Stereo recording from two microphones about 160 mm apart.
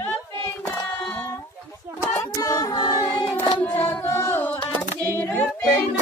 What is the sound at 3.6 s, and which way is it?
Music, 10° left (ahead or behind).